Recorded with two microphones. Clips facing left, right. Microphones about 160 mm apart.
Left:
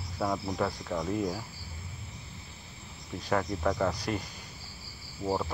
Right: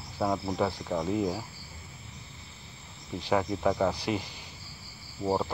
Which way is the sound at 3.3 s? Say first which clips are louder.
Right 2 dB; 10° right (ahead or behind).